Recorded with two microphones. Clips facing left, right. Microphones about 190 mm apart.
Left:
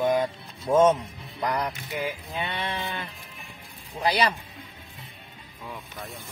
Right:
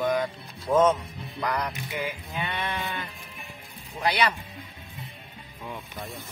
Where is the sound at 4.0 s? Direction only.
35° left (ahead or behind).